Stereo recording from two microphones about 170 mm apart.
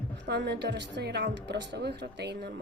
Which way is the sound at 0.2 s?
85° right.